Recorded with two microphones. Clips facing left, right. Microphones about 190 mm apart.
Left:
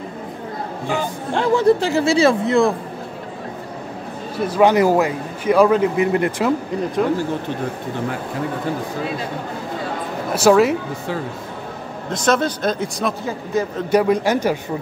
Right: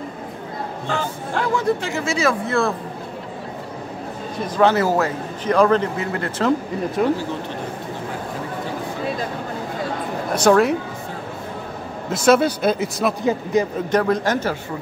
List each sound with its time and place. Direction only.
1.3 s speech: 30° left (ahead or behind)
2.4 s a man's voice: 15° left (ahead or behind)
4.6 s a man's voice: 15° left (ahead or behind)
10.3 s speech: 5° left (ahead or behind)
12.1 s speech: 10° right (ahead or behind)
13.2 s speech: 15° right (ahead or behind)
13.8 s a man's voice: 10° left (ahead or behind)